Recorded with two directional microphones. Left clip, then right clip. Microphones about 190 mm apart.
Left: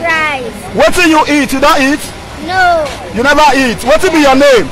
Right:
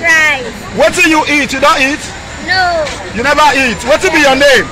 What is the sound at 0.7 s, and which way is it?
A man's voice, 40° left (ahead or behind).